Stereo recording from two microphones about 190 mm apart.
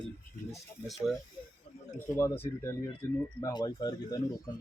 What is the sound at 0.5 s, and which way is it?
Speech, centre (ahead or behind).